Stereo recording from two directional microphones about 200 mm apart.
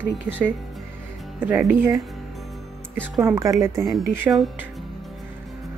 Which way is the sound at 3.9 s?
Centre (ahead or behind).